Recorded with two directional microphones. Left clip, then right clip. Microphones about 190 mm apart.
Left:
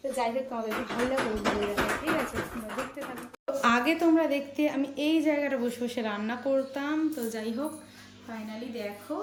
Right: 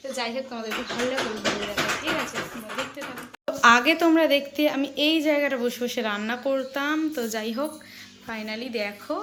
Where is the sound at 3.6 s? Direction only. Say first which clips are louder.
Right 8 dB; 5° left (ahead or behind).